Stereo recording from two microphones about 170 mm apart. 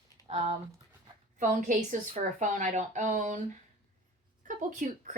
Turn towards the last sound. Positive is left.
turn(degrees=-45)  # may be behind; listen again after turning